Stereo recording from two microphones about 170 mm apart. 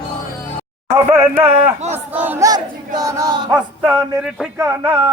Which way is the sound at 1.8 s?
40° right (ahead or behind).